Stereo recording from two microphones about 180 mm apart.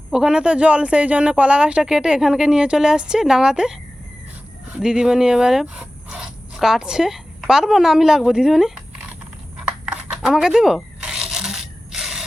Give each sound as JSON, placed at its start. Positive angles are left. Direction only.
{"t": 0.1, "sound": "speech", "side_deg": -5}
{"t": 4.8, "sound": "speech", "side_deg": -5}
{"t": 9.8, "sound": "a sound", "side_deg": -5}